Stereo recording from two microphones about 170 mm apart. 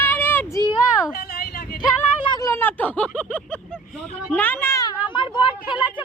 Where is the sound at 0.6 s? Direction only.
25° left (ahead or behind).